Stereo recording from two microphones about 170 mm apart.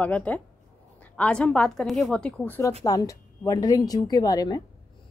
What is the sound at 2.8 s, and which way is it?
A woman's voice, 20° left (ahead or behind).